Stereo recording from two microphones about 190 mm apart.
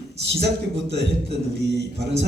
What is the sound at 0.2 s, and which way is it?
A man's voice, 60° right (ahead or behind).